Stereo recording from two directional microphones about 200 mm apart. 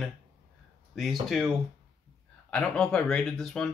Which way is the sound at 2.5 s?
5° left (ahead or behind).